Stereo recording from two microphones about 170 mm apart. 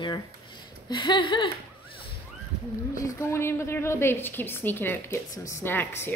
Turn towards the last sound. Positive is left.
turn(degrees=15)  # may be behind; listen again after turning